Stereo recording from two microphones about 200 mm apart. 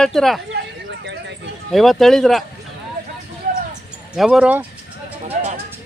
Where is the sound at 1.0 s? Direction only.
60° right (ahead or behind).